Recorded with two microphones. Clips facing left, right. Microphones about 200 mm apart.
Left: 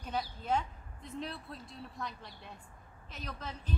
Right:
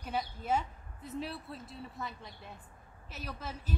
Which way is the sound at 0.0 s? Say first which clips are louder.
Right 1 dB; 5° right (ahead or behind).